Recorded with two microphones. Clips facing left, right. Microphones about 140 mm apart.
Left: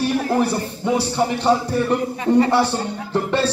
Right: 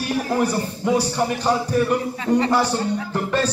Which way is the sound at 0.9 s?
25° left (ahead or behind).